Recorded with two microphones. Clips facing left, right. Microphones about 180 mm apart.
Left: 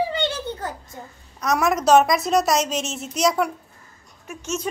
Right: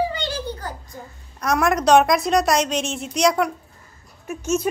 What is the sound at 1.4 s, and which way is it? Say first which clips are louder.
A child's voice: right 1 dB; centre (ahead or behind).